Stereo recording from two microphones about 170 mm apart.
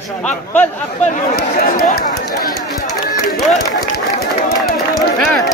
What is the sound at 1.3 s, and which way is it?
Speech, 60° left (ahead or behind).